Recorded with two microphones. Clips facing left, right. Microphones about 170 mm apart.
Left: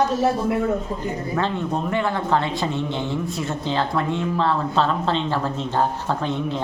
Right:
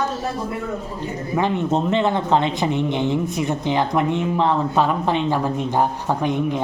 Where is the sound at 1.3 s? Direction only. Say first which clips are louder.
Right 6 dB; 15° right (ahead or behind).